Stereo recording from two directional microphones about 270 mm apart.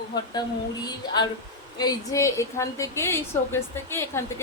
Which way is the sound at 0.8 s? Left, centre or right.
Centre.